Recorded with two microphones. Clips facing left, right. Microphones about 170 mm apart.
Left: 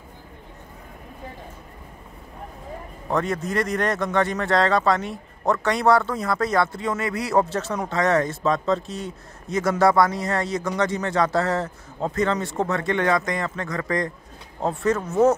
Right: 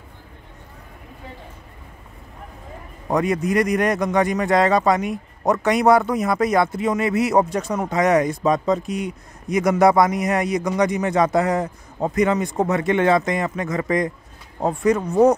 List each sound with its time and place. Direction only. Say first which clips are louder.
3.1 s a man's voice: right 4 dB; 15° right (ahead or behind)